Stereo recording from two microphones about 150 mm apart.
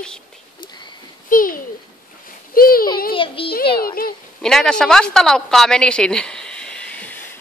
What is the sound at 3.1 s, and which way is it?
Speech, 35° left (ahead or behind).